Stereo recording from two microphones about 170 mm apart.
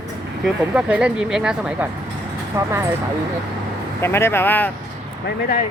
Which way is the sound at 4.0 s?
15° left (ahead or behind).